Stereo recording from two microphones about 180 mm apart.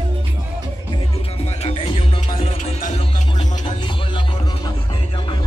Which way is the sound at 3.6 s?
25° left (ahead or behind).